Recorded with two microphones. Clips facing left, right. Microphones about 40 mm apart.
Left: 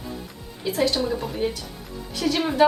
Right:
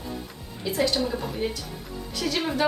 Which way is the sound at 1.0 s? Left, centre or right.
Centre.